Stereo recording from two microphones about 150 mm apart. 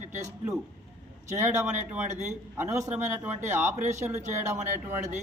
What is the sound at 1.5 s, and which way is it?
Speech, 50° right (ahead or behind).